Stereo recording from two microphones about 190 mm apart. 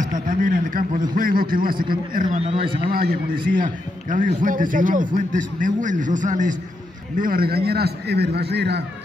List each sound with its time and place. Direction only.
0.0 s a sound: 45° right (ahead or behind)
1.1 s a man's voice: 50° right (ahead or behind); by 2.8 s 30° right (ahead or behind)
2.9 s a man's voice: 50° right (ahead or behind)